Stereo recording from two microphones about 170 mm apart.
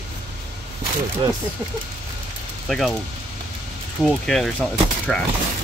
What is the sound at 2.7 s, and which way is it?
Speech, centre (ahead or behind).